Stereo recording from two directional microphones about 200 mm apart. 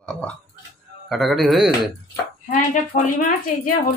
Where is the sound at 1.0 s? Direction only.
Centre (ahead or behind).